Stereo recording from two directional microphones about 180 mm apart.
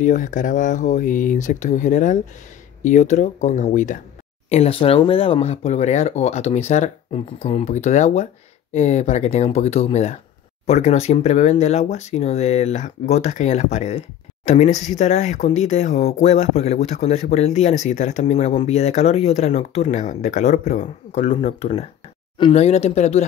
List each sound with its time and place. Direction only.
0.0 s speech: 45° left (ahead or behind)
4.5 s speech: 35° left (ahead or behind)